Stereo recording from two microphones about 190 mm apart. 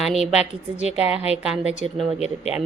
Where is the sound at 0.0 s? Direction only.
Centre (ahead or behind).